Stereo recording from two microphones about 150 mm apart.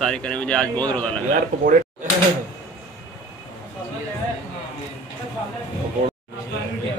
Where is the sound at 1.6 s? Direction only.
60° right (ahead or behind).